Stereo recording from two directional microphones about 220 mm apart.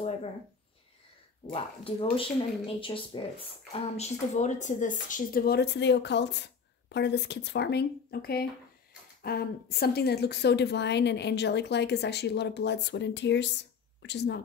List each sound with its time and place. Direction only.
1.5 s speech: 25° left (ahead or behind); by 14.4 s 50° left (ahead or behind)